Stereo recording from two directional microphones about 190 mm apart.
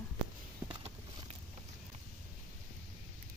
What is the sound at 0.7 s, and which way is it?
Clip-clop, 30° right (ahead or behind).